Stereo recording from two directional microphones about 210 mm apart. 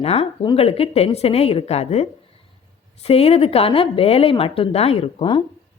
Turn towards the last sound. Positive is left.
turn(degrees=25)  # may be behind; listen again after turning